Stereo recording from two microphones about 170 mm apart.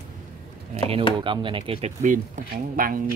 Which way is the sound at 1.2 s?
30° right (ahead or behind).